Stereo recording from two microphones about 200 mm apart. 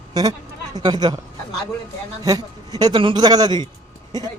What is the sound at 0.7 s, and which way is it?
Speech, 20° right (ahead or behind).